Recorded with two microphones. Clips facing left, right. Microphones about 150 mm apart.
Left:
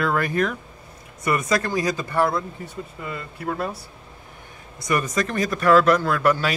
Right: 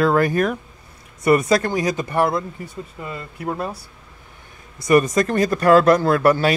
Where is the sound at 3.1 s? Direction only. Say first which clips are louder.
Right 2 dB; 25° right (ahead or behind).